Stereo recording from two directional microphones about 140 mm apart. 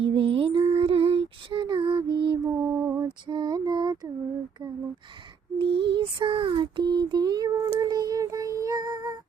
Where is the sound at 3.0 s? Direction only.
35° right (ahead or behind).